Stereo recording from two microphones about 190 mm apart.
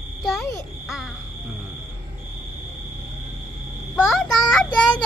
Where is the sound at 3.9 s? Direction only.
Centre (ahead or behind).